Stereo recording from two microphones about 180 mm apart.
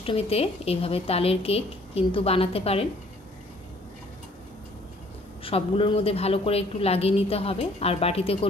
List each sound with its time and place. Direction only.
0.0 s a man's voice: 35° left (ahead or behind)
5.4 s a man's voice: 30° left (ahead or behind)